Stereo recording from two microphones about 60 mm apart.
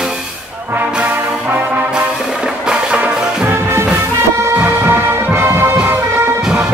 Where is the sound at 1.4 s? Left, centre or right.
Right.